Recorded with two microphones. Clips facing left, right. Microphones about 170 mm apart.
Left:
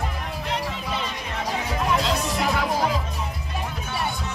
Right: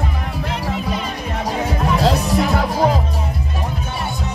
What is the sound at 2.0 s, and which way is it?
Music, 40° right (ahead or behind).